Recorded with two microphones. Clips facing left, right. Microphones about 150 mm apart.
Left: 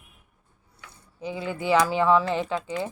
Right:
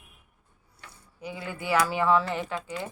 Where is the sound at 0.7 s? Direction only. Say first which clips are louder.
Left 1 dB; 20° left (ahead or behind).